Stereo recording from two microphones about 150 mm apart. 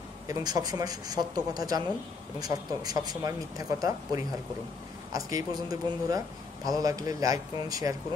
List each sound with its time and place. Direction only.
0.3 s speech: 25° right (ahead or behind)